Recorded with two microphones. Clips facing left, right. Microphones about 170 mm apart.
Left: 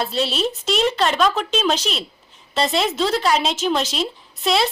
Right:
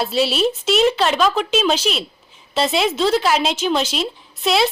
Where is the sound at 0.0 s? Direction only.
5° right (ahead or behind).